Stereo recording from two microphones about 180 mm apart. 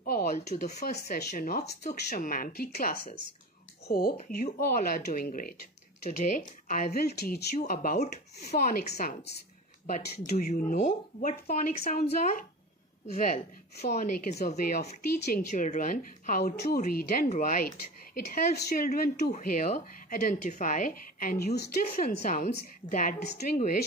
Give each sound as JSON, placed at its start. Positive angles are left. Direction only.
{"t": 0.0, "sound": "a woman's voice", "side_deg": 50}
{"t": 1.8, "sound": "a woman's voice", "side_deg": 40}
{"t": 7.5, "sound": "a woman's voice", "side_deg": 50}
{"t": 8.5, "sound": "a woman's voice", "side_deg": 55}
{"t": 10.4, "sound": "a woman's voice", "side_deg": 50}
{"t": 15.5, "sound": "a woman's voice", "side_deg": 45}
{"t": 22.0, "sound": "a woman's voice", "side_deg": 45}